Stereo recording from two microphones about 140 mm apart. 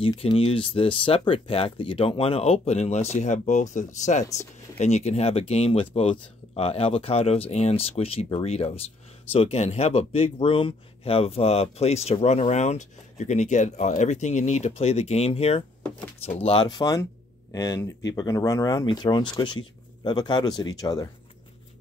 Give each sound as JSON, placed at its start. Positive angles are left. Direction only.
{"t": 0.0, "sound": "speech", "side_deg": 40}
{"t": 16.6, "sound": "speech", "side_deg": 25}